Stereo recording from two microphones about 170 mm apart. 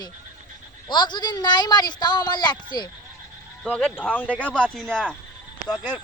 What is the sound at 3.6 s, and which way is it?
Speech, 5° left (ahead or behind).